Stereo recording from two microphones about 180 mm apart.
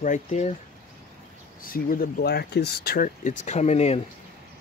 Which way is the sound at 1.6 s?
50° left (ahead or behind).